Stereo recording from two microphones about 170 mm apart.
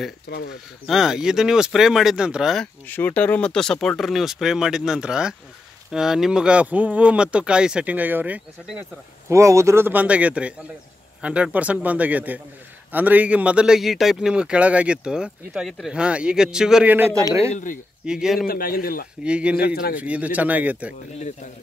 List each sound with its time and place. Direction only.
0.8 s a man's voice: centre (ahead or behind)
17.5 s speech: 50° left (ahead or behind)
18.0 s a man's voice: 5° right (ahead or behind)
18.5 s a man's voice: 60° left (ahead or behind)
19.2 s speech: 5° right (ahead or behind)
19.6 s a man's voice: 65° left (ahead or behind)
20.0 s speech: 10° right (ahead or behind)